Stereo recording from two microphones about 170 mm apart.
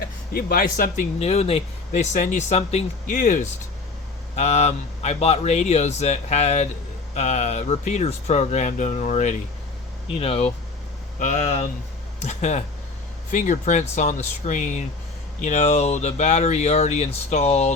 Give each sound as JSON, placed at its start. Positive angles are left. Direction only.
{"t": 0.3, "sound": "speech", "side_deg": 60}
{"t": 1.2, "sound": "speech", "side_deg": 40}
{"t": 3.2, "sound": "speech", "side_deg": 50}